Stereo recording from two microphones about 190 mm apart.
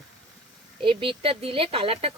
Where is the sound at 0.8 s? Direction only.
25° right (ahead or behind).